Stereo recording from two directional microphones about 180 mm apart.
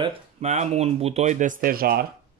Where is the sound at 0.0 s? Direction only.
35° right (ahead or behind); by 2.0 s 55° right (ahead or behind).